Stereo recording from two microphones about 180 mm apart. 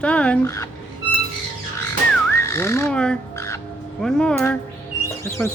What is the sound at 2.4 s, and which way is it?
Speech, 15° left (ahead or behind).